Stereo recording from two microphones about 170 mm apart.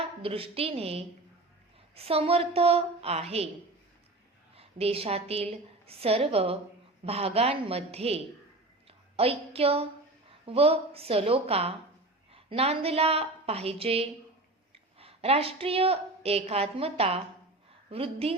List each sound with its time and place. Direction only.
0.2 s a woman's voice: 35° right (ahead or behind)
4.5 s a woman's voice: 35° right (ahead or behind)